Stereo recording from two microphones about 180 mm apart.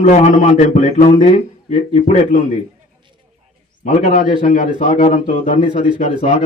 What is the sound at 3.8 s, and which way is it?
A man's voice, 45° left (ahead or behind).